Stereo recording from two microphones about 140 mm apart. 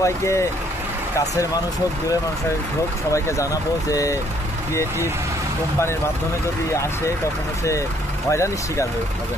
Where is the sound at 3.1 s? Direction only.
20° left (ahead or behind).